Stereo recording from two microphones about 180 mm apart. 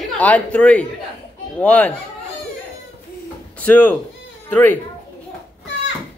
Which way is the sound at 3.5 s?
10° left (ahead or behind).